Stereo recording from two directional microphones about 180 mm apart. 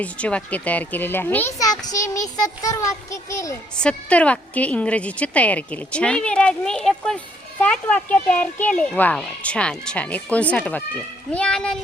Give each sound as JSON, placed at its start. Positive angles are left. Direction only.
{"t": 0.0, "sound": "speech", "side_deg": 5}
{"t": 3.8, "sound": "a child's voice", "side_deg": 5}